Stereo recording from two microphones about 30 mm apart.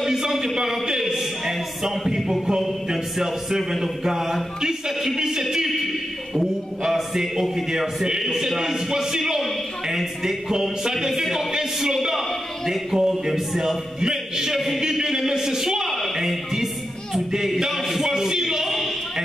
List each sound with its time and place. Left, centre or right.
0.0 s a sound: centre
3.8 s a man's voice: centre
6.8 s speech: centre
14.0 s music: centre
14.8 s a sound: centre
17.6 s music: centre